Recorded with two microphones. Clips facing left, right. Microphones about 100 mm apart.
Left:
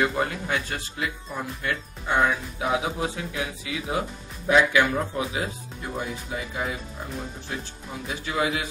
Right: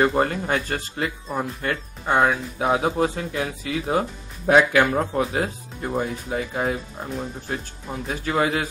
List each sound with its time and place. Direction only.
0.0 s speech: 45° right (ahead or behind)